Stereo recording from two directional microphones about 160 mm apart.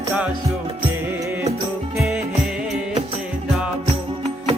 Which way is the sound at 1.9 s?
5° right (ahead or behind).